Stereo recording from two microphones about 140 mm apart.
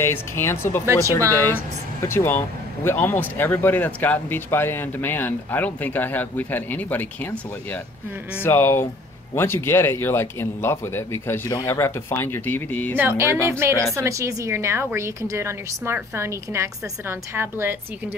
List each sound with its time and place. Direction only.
0.0 s speech: 15° left (ahead or behind)
0.8 s a woman's voice: 20° right (ahead or behind)
1.3 s speech: 15° left (ahead or behind)
12.9 s a woman's voice: 15° right (ahead or behind)